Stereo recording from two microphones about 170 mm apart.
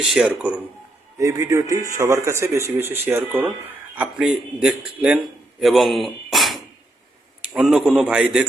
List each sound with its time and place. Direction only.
0.0 s a man's voice: 5° right (ahead or behind)